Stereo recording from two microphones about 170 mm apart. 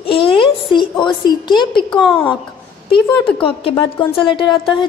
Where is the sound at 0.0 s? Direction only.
30° left (ahead or behind).